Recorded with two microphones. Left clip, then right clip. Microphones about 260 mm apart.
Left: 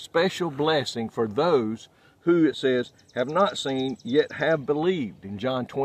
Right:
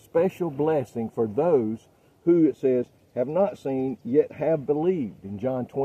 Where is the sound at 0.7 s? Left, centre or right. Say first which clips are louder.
Left 1 dB; left.